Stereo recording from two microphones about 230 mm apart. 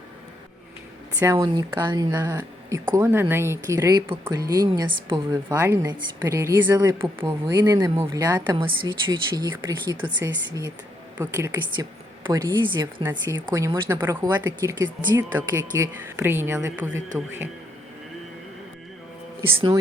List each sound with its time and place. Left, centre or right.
1.2 s speech: centre